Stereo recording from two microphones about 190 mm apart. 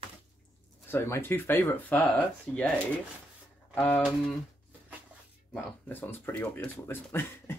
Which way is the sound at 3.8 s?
10° left (ahead or behind).